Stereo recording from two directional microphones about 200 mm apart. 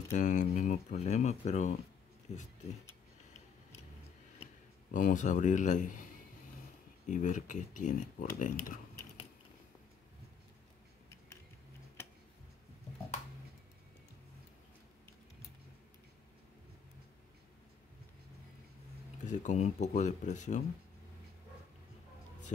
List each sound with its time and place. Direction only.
0.1 s speech: 40° left (ahead or behind)
4.9 s speech: 40° left (ahead or behind)
7.1 s speech: 40° left (ahead or behind)
19.2 s speech: 35° left (ahead or behind)